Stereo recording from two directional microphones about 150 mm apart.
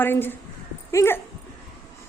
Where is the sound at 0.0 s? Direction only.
15° left (ahead or behind).